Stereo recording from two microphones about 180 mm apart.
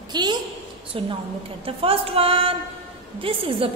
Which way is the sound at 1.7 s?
30° right (ahead or behind).